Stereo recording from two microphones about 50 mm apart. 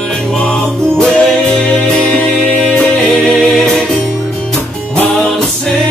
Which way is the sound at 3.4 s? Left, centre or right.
Centre.